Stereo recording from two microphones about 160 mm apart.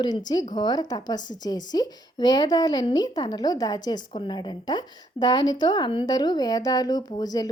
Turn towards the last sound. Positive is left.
turn(degrees=25)  # may be behind; listen again after turning